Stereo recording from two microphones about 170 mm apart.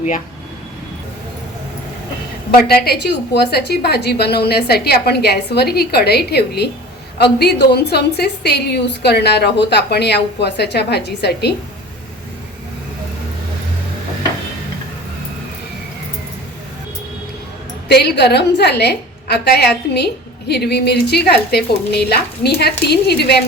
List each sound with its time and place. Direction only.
2.5 s a woman's voice: 65° left (ahead or behind)
17.8 s a woman's voice: 75° left (ahead or behind)